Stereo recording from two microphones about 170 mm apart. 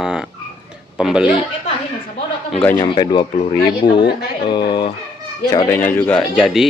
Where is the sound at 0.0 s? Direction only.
5° right (ahead or behind).